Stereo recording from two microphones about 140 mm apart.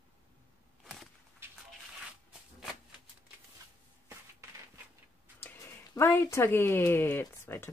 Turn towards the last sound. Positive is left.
turn(degrees=15)  # may be behind; listen again after turning